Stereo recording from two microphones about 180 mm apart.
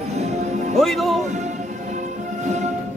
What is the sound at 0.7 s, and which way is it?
Music, centre (ahead or behind).